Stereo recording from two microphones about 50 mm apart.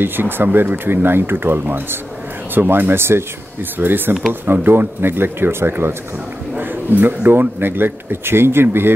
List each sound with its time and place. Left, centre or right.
0.0 s speech: right
3.7 s speech: right
6.6 s speech: right